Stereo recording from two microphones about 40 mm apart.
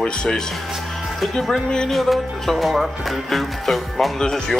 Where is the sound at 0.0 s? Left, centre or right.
Left.